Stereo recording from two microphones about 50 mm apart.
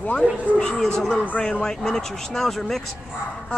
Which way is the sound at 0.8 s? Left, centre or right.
Centre.